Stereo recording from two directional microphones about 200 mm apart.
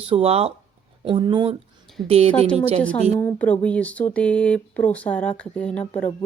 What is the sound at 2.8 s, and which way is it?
Speech, 5° left (ahead or behind).